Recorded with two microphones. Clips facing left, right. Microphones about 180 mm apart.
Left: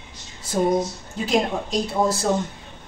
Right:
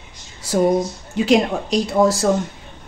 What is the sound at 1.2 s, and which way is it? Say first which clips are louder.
A woman's voice: right 5 dB; 85° right.